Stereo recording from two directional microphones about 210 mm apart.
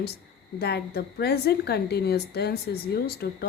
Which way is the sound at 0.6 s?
50° left (ahead or behind).